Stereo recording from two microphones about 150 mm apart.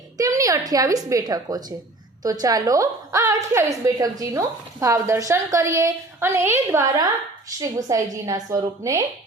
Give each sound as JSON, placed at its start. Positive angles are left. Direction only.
{"t": 0.2, "sound": "a woman's voice", "side_deg": -20}